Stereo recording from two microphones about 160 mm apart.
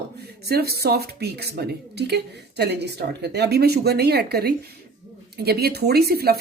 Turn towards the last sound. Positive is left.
turn(degrees=-75)  # may be behind; listen again after turning